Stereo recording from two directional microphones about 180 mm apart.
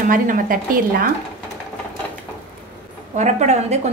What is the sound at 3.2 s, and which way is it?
Speech, 40° right (ahead or behind).